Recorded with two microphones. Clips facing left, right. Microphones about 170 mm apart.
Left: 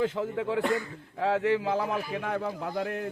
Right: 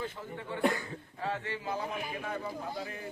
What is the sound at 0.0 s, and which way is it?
A man's voice, 90° left.